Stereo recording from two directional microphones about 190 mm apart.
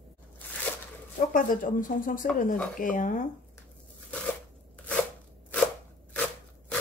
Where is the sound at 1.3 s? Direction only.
45° left (ahead or behind).